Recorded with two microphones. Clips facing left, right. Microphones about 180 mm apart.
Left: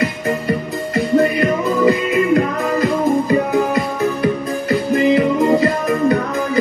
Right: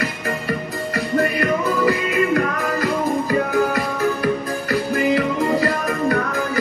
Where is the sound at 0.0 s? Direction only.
20° left (ahead or behind).